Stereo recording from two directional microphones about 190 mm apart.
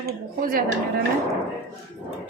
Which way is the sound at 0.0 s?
50° right (ahead or behind).